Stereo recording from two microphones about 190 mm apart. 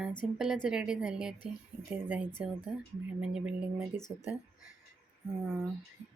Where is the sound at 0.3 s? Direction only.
5° right (ahead or behind).